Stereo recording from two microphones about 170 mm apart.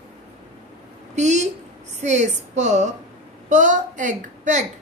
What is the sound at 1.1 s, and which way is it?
A woman's voice, 45° right (ahead or behind).